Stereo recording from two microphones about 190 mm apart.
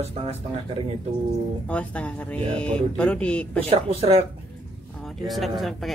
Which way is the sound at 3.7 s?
30° right (ahead or behind).